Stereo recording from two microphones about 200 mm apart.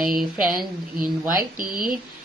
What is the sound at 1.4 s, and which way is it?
Speech, 45° right (ahead or behind).